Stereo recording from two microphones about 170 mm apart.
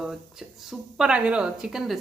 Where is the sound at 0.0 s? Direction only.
Centre (ahead or behind).